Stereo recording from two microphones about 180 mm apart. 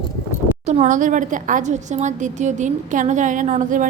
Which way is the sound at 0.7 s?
40° right (ahead or behind).